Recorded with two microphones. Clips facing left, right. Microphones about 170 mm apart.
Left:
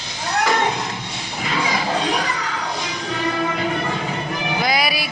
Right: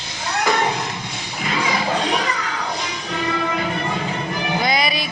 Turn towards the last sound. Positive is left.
turn(degrees=5)  # may be behind; listen again after turning